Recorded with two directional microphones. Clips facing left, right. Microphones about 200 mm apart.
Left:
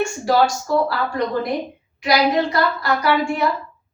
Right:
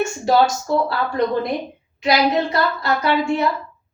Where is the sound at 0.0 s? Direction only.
25° right (ahead or behind).